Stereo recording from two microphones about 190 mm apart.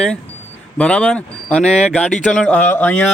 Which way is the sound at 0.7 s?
5° left (ahead or behind).